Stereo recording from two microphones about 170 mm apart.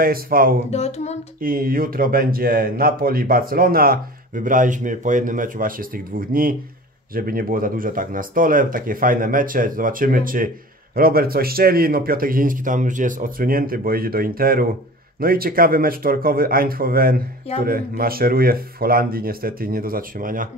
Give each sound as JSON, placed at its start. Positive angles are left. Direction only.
{"t": 0.0, "sound": "speech", "side_deg": -60}
{"t": 0.7, "sound": "a sound", "side_deg": 40}
{"t": 1.4, "sound": "speech", "side_deg": -60}